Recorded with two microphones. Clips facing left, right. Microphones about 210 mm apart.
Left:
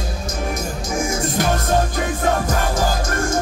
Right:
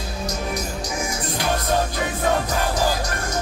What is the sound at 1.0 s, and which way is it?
Music, 45° left (ahead or behind).